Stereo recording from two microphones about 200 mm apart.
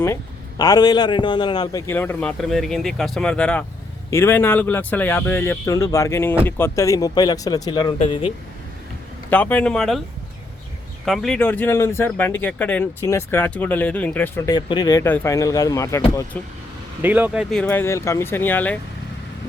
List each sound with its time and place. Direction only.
0.0 s speech: 15° left (ahead or behind)
9.3 s speech: 10° left (ahead or behind)
11.0 s speech: centre (ahead or behind)
17.0 s speech: 10° right (ahead or behind)
17.5 s speech: 10° left (ahead or behind)